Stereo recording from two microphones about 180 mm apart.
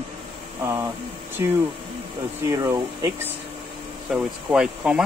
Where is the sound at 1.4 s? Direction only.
15° right (ahead or behind).